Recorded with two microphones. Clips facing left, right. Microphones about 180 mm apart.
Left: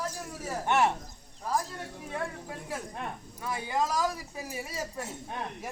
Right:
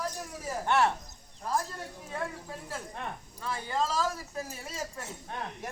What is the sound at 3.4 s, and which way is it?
Speech, 15° left (ahead or behind).